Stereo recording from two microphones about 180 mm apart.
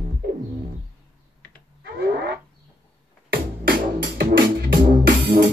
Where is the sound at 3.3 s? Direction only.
55° right (ahead or behind).